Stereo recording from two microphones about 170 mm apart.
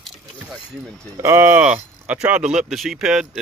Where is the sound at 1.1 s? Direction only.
15° right (ahead or behind).